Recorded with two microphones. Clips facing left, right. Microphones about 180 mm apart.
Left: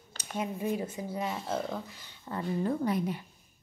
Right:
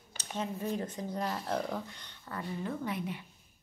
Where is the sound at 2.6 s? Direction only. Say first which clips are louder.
Left 7 dB; 40° left (ahead or behind).